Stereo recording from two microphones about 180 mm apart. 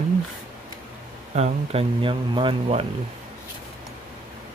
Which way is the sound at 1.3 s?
35° right (ahead or behind).